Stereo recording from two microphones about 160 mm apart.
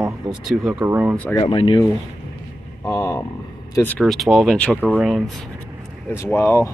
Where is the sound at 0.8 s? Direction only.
10° right (ahead or behind).